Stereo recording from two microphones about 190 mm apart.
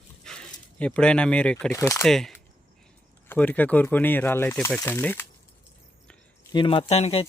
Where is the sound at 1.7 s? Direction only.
15° left (ahead or behind).